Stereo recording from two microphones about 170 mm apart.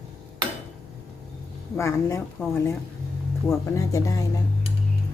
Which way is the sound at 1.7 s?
15° left (ahead or behind).